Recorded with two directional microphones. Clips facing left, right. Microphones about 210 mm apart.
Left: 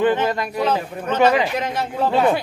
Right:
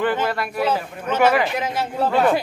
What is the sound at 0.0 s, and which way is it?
Speech, 20° left (ahead or behind).